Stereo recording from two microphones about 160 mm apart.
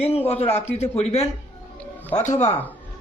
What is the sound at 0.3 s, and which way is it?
A man's voice, 40° left (ahead or behind).